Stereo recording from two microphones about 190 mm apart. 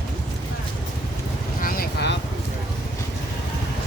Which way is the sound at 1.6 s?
50° left (ahead or behind).